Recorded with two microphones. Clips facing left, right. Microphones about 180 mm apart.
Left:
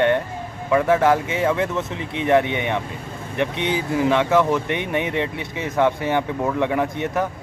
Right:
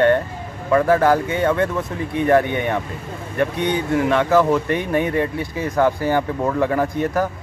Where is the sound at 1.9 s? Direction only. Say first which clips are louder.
Right 4 dB; 90° left.